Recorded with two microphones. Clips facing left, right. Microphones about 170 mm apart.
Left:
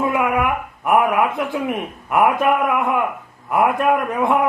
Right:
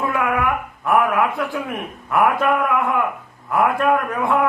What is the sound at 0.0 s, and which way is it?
A man's voice, 20° left (ahead or behind).